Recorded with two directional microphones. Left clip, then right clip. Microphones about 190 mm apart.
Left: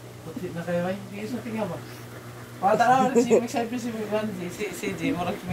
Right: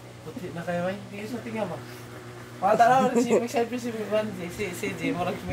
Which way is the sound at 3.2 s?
20° right (ahead or behind).